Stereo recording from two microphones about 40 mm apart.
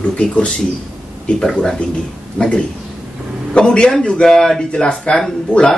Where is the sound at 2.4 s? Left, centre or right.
Left.